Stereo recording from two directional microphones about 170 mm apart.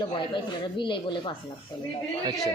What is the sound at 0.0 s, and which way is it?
Speech, 25° left (ahead or behind).